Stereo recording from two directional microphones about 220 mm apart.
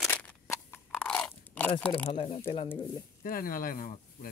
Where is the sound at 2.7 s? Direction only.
15° left (ahead or behind).